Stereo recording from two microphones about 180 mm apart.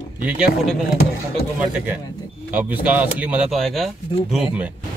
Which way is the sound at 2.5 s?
10° right (ahead or behind).